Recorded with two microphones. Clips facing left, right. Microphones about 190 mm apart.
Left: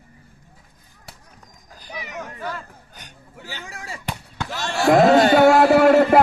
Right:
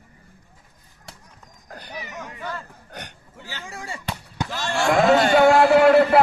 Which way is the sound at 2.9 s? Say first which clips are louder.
Right 7 dB; 70° right (ahead or behind).